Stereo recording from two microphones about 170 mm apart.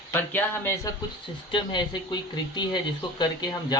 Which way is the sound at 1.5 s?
25° left (ahead or behind).